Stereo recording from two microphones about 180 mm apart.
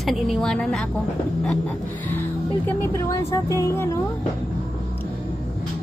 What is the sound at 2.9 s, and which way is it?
Speech, 15° left (ahead or behind).